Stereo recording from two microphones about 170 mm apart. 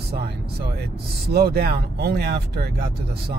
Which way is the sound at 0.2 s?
70° right (ahead or behind).